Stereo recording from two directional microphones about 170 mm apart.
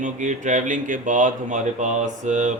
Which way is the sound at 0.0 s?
50° right (ahead or behind).